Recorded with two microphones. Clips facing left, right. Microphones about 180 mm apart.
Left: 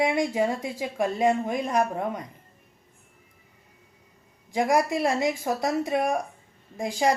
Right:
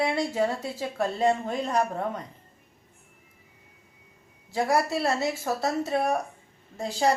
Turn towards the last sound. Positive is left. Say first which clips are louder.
# left 1 dB
turn(degrees=10)  # may be behind; listen again after turning